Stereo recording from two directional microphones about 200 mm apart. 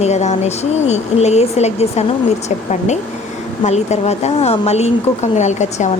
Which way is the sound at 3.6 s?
35° left (ahead or behind).